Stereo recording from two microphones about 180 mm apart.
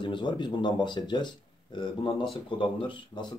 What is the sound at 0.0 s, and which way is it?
Speech, 25° left (ahead or behind).